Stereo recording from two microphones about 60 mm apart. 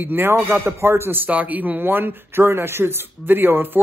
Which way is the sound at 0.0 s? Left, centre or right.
Right.